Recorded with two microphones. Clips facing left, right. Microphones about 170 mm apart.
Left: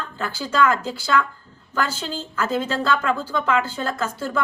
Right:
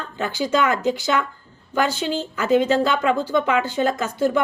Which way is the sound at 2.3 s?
15° right (ahead or behind).